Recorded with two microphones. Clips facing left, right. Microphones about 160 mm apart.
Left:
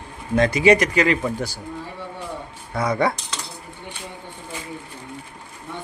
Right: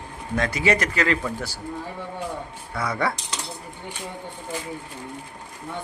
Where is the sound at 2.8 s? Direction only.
20° left (ahead or behind).